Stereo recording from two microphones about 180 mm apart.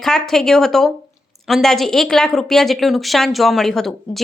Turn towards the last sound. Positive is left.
turn(degrees=0)  # may be behind; listen again after turning